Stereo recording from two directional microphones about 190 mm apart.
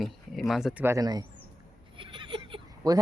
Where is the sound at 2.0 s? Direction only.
25° right (ahead or behind).